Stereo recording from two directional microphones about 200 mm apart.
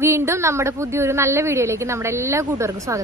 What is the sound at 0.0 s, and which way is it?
A woman's voice, 15° right (ahead or behind).